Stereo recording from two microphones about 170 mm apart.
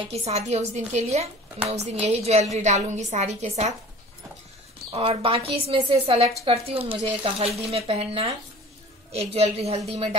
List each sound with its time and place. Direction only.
0.1 s a woman's voice: 40° right (ahead or behind)
4.9 s a woman's voice: 35° right (ahead or behind)